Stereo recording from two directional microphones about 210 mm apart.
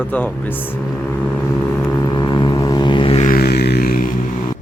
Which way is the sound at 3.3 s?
45° left (ahead or behind).